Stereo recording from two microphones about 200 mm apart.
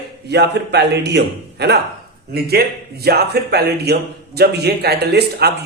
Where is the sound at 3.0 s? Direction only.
55° right (ahead or behind).